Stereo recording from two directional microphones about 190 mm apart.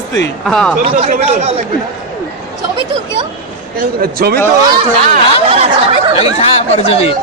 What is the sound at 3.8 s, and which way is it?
Speech, 55° right (ahead or behind).